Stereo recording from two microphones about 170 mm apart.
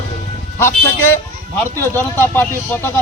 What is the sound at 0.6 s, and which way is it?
A man's voice, 15° left (ahead or behind).